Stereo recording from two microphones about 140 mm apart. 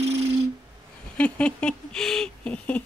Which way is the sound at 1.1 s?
10° left (ahead or behind).